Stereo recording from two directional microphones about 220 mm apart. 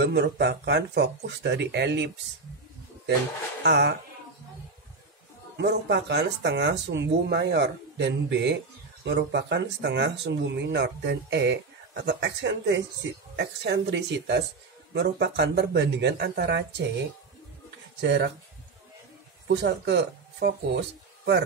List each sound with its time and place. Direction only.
0.0 s speech: 50° right (ahead or behind)
3.6 s speech: 50° right (ahead or behind)
5.6 s speech: 50° right (ahead or behind)
18.0 s speech: 50° right (ahead or behind)
19.4 s speech: 50° right (ahead or behind)